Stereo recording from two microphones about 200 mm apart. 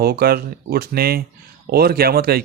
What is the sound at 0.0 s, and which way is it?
Speech, 50° right (ahead or behind).